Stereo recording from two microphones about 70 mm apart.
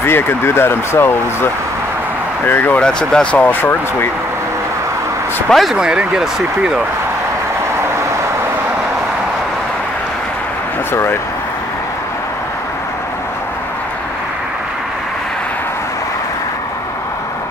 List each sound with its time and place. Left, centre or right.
0.0 s speech: left
2.8 s speech: centre
5.5 s speech: centre
5.8 s speech: centre
10.9 s speech: left